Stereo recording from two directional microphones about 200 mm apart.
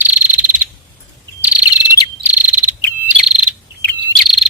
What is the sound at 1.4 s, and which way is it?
Bird, 10° right (ahead or behind).